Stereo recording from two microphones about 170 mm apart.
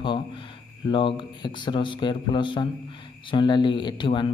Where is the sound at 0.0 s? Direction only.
30° left (ahead or behind).